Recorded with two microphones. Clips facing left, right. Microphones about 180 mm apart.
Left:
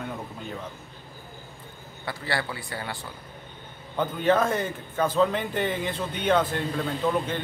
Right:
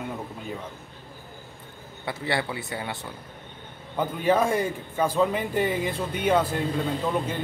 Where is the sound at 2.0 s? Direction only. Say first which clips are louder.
Right 2 dB; 20° right (ahead or behind).